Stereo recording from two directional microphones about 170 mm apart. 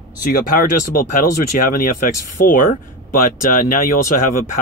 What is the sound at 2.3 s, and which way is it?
Speech, 55° left (ahead or behind).